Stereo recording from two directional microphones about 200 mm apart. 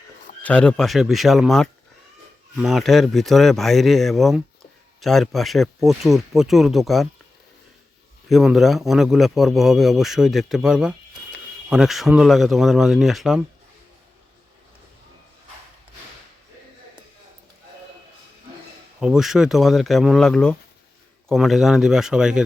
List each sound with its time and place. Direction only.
0.4 s a man's voice: 5° left (ahead or behind)
8.3 s a man's voice: centre (ahead or behind)
18.9 s a man's voice: 5° right (ahead or behind)